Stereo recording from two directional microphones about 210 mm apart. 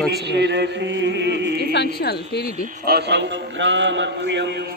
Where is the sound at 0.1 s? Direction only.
55° right (ahead or behind).